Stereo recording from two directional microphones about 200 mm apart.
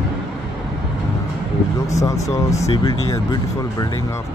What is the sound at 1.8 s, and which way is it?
Speech, 15° left (ahead or behind).